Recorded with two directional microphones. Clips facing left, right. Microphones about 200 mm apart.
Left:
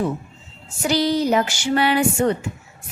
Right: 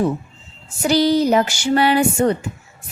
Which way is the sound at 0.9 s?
35° right (ahead or behind).